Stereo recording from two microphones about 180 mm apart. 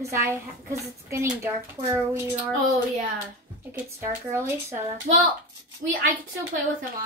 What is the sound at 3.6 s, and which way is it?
A woman's voice, 15° right (ahead or behind).